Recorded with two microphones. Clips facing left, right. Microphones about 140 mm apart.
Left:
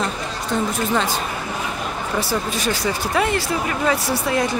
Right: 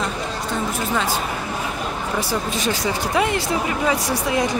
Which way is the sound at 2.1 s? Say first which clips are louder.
Left 2 dB; 20° right (ahead or behind).